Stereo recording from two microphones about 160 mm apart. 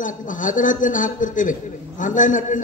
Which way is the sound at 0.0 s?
55° left (ahead or behind).